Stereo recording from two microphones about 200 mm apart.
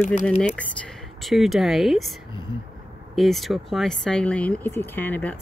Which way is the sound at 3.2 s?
Centre (ahead or behind).